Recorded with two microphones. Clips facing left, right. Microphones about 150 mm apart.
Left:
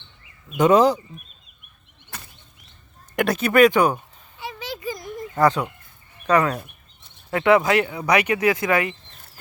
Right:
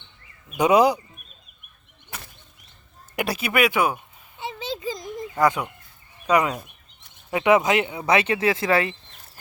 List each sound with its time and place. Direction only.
0.5 s speech: 10° right (ahead or behind)
3.2 s speech: 5° right (ahead or behind)
4.4 s a sound: 25° right (ahead or behind)
5.4 s speech: 10° right (ahead or behind); by 9.0 s 30° right (ahead or behind)